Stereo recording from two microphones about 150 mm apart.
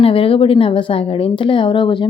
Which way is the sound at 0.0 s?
40° left (ahead or behind).